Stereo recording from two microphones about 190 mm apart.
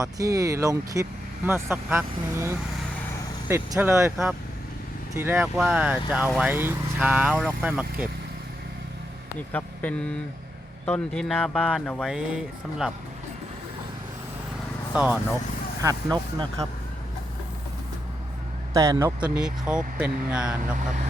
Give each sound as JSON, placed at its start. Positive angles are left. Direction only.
{"t": 0.0, "sound": "speech", "side_deg": -20}
{"t": 9.5, "sound": "speech", "side_deg": 10}
{"t": 14.9, "sound": "speech", "side_deg": -10}
{"t": 15.8, "sound": "speech", "side_deg": -20}
{"t": 18.7, "sound": "speech", "side_deg": -20}